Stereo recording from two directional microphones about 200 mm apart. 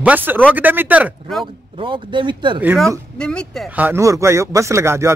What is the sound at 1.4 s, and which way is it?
Speech, 25° right (ahead or behind).